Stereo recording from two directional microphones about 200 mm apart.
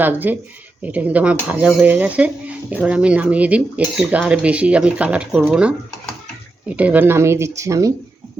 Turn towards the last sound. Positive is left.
turn(degrees=-15)  # may be behind; listen again after turning